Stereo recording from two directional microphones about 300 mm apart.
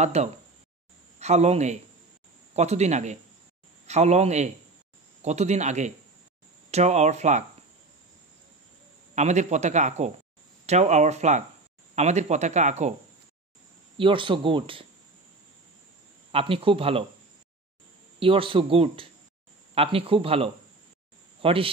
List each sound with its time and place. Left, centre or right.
0.0 s speech: right
9.1 s speech: right
13.9 s speech: centre
16.3 s speech: centre
18.2 s speech: centre